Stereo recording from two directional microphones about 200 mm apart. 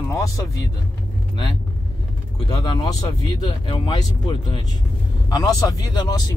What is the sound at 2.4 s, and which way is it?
Speech, 20° left (ahead or behind).